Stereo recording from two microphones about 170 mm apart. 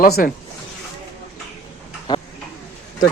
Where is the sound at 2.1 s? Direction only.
25° left (ahead or behind).